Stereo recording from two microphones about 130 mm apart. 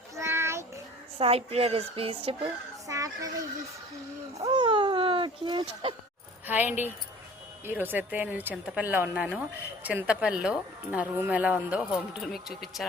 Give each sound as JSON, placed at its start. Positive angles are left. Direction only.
{"t": 0.2, "sound": "a sound", "side_deg": -20}
{"t": 1.2, "sound": "speech", "side_deg": -50}
{"t": 2.8, "sound": "speech", "side_deg": -25}
{"t": 4.4, "sound": "speech", "side_deg": -40}
{"t": 6.5, "sound": "a woman's voice", "side_deg": -15}